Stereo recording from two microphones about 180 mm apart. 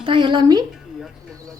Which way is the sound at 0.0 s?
25° right (ahead or behind).